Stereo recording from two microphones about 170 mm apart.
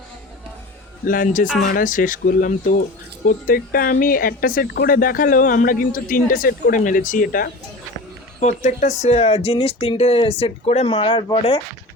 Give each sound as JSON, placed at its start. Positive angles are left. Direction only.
{"t": 1.0, "sound": "speech", "side_deg": 55}
{"t": 8.4, "sound": "speech", "side_deg": 45}